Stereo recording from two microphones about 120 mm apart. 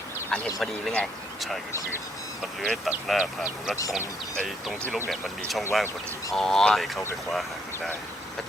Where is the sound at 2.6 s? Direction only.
Centre (ahead or behind).